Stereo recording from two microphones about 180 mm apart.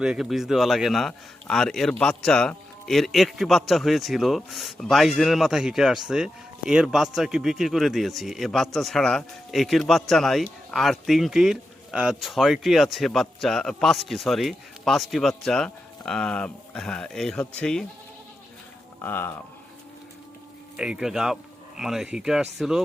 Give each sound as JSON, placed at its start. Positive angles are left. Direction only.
{"t": 0.0, "sound": "speech", "side_deg": -5}
{"t": 19.0, "sound": "speech", "side_deg": 10}
{"t": 20.7, "sound": "speech", "side_deg": -5}